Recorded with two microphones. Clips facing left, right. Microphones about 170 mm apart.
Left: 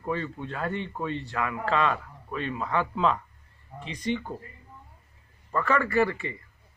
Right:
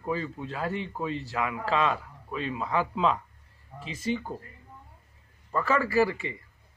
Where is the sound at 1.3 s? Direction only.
15° right (ahead or behind).